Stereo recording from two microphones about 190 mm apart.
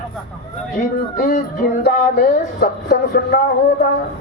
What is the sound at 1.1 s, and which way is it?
Speech, 45° left (ahead or behind).